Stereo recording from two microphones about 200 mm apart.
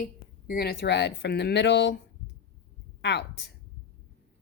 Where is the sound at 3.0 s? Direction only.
55° left (ahead or behind).